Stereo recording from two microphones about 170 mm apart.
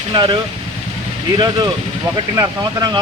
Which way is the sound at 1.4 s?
25° right (ahead or behind).